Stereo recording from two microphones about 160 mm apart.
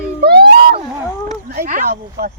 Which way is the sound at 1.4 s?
70° right (ahead or behind).